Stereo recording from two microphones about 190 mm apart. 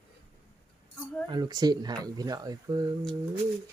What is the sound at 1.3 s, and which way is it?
Speech, 20° right (ahead or behind).